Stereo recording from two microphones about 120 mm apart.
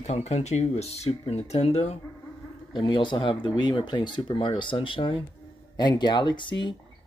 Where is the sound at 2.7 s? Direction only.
40° left (ahead or behind).